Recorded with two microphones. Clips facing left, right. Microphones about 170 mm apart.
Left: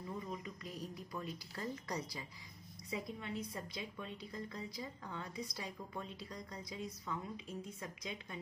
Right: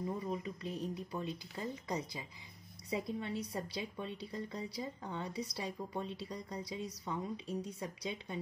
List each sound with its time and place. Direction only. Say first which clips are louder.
0.0 s speech: right 6 dB; 25° right (ahead or behind)
2.9 s speech: right 5 dB; 30° right (ahead or behind)